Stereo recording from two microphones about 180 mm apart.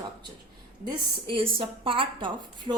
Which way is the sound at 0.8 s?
30° right (ahead or behind).